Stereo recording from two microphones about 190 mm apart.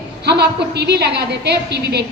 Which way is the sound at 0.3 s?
60° right (ahead or behind).